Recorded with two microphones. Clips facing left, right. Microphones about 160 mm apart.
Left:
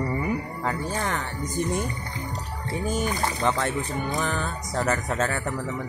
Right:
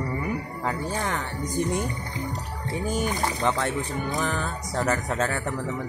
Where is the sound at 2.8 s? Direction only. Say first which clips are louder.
Even; 15° right (ahead or behind).